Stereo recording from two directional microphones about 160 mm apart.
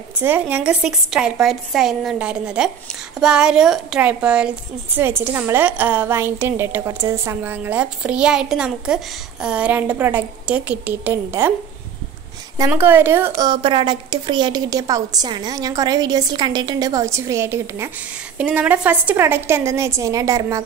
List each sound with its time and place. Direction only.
0.2 s a woman's voice: 10° right (ahead or behind)
12.5 s a woman's voice: 15° right (ahead or behind)